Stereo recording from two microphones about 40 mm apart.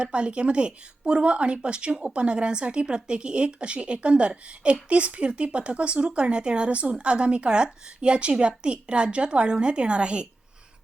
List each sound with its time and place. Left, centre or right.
0.0 s speech: right